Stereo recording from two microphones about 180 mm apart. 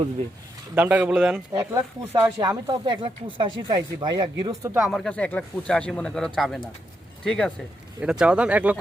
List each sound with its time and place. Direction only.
0.8 s speech: 10° right (ahead or behind)
1.5 s speech: 20° right (ahead or behind)
4.7 s speech: centre (ahead or behind)